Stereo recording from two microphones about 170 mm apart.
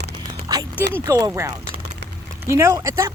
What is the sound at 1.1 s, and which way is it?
Speech, 20° right (ahead or behind).